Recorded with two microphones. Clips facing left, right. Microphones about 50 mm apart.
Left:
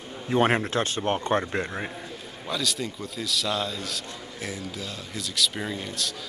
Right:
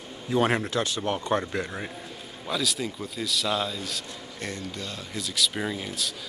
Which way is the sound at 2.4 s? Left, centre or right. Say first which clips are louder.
Right 1 dB; centre.